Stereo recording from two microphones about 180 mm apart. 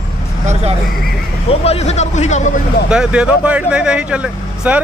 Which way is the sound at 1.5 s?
35° left (ahead or behind).